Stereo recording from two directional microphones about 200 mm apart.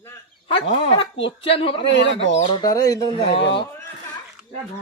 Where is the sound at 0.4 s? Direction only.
30° left (ahead or behind).